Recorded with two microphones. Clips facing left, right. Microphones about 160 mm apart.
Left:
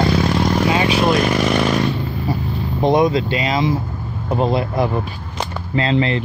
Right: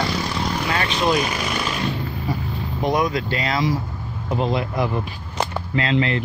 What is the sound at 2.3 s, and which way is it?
Boat, 30° left (ahead or behind).